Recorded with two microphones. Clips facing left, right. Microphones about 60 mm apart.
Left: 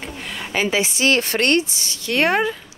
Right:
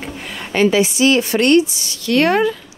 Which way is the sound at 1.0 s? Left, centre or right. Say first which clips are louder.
Right 3 dB; left.